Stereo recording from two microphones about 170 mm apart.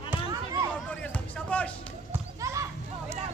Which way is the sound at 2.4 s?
20° right (ahead or behind).